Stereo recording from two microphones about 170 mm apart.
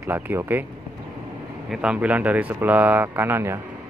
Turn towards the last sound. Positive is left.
turn(degrees=-15)  # may be behind; listen again after turning